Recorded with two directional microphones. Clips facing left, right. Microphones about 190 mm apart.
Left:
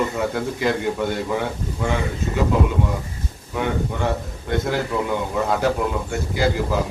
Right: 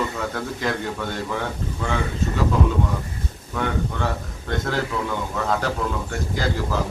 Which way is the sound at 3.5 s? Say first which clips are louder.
Left 2 dB; 15° left (ahead or behind).